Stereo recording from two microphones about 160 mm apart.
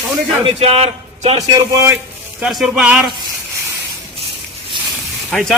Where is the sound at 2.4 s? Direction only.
5° right (ahead or behind).